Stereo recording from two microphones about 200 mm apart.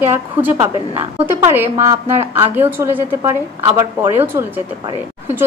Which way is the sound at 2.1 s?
10° right (ahead or behind).